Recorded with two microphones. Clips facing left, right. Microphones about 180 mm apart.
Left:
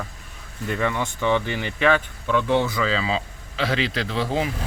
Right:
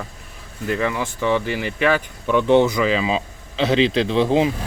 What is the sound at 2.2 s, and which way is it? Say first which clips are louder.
Speech: right 7 dB; 20° right (ahead or behind).